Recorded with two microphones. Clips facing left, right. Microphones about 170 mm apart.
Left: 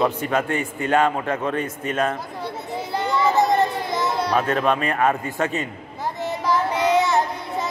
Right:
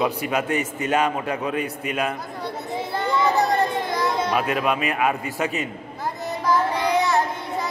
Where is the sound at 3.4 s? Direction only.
20° left (ahead or behind).